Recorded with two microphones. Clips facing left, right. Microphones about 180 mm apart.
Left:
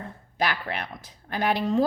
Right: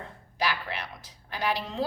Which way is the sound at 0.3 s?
55° left (ahead or behind).